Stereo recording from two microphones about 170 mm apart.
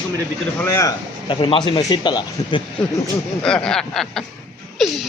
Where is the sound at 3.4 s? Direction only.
5° left (ahead or behind).